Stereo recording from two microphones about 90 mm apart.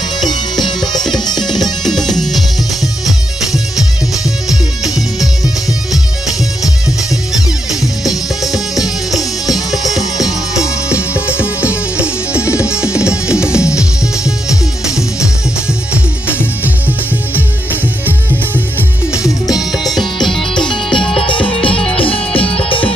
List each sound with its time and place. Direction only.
0.2 s music: 50° left (ahead or behind)
1.4 s music: 5° left (ahead or behind)
4.8 s music: 5° right (ahead or behind)
7.8 s music: centre (ahead or behind)
19.1 s music: 40° left (ahead or behind)
19.8 s music: centre (ahead or behind)
21.2 s music: 80° left